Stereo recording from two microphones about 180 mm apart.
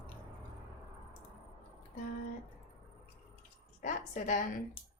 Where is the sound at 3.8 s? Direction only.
45° left (ahead or behind).